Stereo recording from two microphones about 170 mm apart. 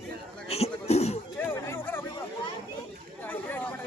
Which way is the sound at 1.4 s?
10° left (ahead or behind).